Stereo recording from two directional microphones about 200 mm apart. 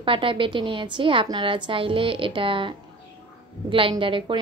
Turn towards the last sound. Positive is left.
turn(degrees=-25)  # may be behind; listen again after turning